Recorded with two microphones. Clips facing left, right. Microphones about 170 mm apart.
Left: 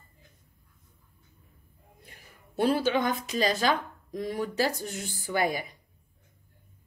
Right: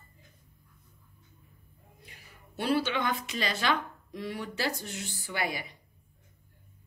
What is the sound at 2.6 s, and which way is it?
A woman's voice, 45° left (ahead or behind).